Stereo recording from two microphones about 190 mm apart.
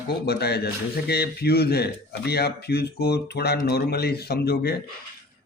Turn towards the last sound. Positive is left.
turn(degrees=55)  # may be behind; listen again after turning